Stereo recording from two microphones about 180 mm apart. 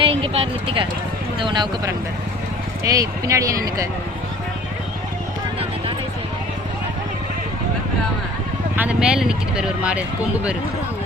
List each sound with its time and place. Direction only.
0.0 s speech: 30° right (ahead or behind)
8.7 s speech: 10° right (ahead or behind)